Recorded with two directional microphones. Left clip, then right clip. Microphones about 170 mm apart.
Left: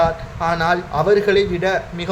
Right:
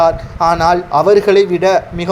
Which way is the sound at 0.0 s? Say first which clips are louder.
Right 7 dB; 35° right (ahead or behind).